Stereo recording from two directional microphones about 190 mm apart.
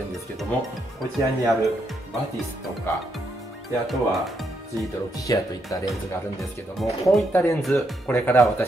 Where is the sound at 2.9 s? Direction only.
10° left (ahead or behind).